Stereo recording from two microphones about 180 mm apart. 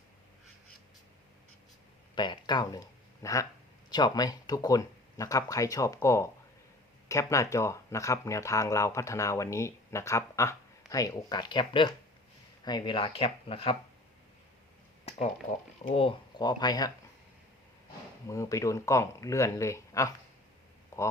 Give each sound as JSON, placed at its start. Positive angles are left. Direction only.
{"t": 2.1, "sound": "speech", "side_deg": 25}
{"t": 15.9, "sound": "speech", "side_deg": 30}
{"t": 18.3, "sound": "speech", "side_deg": 15}
{"t": 20.9, "sound": "a sound", "side_deg": 15}